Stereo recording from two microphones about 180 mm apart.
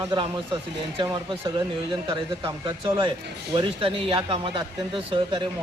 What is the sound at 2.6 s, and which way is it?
A man's voice, 25° right (ahead or behind).